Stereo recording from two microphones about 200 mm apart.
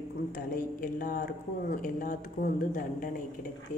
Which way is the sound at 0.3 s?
45° left (ahead or behind).